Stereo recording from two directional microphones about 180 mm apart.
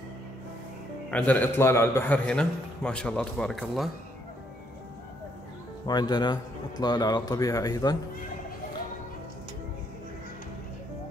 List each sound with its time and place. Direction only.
1.1 s a man's voice: 10° left (ahead or behind)
5.9 s a man's voice: 25° left (ahead or behind)